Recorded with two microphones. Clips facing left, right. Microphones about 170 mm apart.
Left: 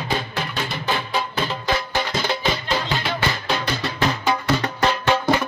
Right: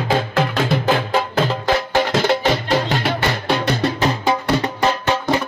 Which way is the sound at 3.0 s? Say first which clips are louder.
Right 4 dB; 60° right (ahead or behind).